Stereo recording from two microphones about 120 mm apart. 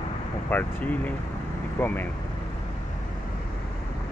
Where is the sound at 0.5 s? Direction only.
15° left (ahead or behind).